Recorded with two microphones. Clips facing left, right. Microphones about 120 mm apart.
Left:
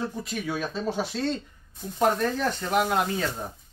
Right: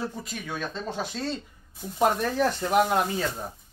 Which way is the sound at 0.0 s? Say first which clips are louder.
Left 3 dB; centre (ahead or behind).